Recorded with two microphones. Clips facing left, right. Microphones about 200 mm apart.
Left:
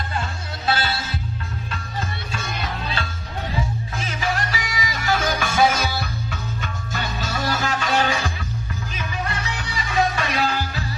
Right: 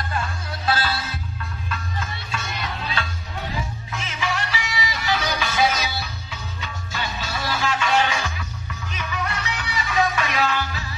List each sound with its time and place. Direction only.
0.1 s music: 25° left (ahead or behind)
3.9 s music: 35° left (ahead or behind)